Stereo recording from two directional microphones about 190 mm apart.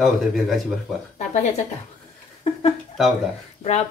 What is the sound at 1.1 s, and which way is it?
Speech, 35° left (ahead or behind).